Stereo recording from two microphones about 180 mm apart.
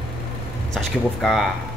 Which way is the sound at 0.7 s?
Centre (ahead or behind).